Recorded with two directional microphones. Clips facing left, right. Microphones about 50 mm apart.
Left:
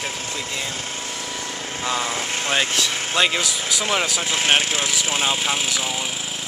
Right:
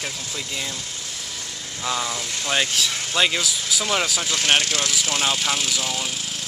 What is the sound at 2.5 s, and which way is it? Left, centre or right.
Speech, left.